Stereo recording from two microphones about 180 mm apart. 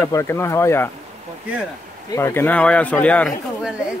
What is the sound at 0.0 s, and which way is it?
Speech, 15° left (ahead or behind).